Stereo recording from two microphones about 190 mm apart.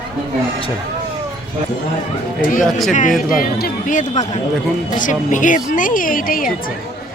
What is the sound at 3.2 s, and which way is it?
Speech, 45° left (ahead or behind).